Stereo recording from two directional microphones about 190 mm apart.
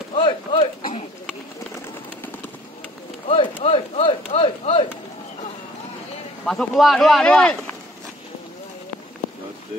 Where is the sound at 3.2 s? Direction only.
30° left (ahead or behind).